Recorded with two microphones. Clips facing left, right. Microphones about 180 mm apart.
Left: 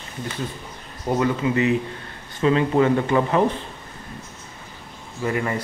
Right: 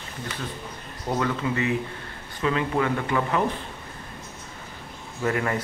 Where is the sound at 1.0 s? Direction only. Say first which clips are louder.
Left 5 dB; 10° left (ahead or behind).